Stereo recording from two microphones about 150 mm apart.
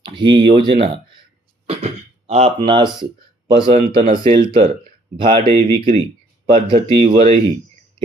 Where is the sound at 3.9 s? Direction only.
70° right (ahead or behind).